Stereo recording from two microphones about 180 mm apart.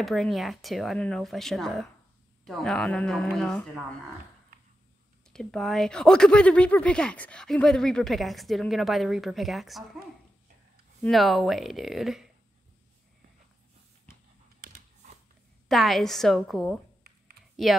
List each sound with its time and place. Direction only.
0.0 s speech: centre (ahead or behind)
4.5 s a sound: 55° right (ahead or behind)
5.3 s speech: centre (ahead or behind)
11.0 s speech: centre (ahead or behind)
14.6 s a sound: 50° right (ahead or behind)
15.7 s speech: centre (ahead or behind)